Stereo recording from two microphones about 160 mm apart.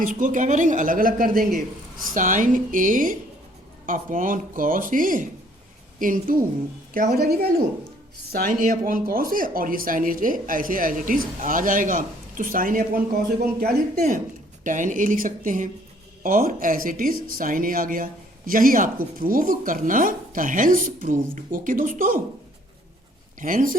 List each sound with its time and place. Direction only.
0.0 s speech: 55° right (ahead or behind)
2.1 s speech: 55° right (ahead or behind); by 7.5 s 75° right (ahead or behind)
8.3 s speech: 60° right (ahead or behind)
13.4 s speech: 75° right (ahead or behind)
14.6 s speech: 55° right (ahead or behind)
23.4 s speech: 55° right (ahead or behind)